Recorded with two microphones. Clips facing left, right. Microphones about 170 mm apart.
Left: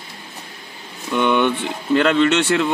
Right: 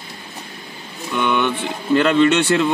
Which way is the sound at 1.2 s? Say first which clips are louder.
Left 2 dB; 20° left (ahead or behind).